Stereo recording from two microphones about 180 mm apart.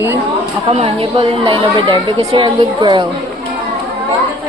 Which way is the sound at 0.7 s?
35° right (ahead or behind).